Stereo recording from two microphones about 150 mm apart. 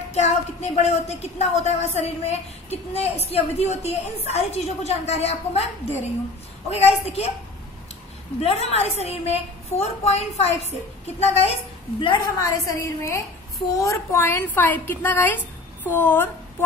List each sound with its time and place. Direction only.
0.1 s a woman's voice: 45° left (ahead or behind)
6.7 s a woman's voice: 45° left (ahead or behind)
8.4 s a woman's voice: 45° left (ahead or behind)
12.0 s a woman's voice: 25° left (ahead or behind)